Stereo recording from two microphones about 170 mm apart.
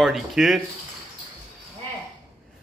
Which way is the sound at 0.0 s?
Centre (ahead or behind).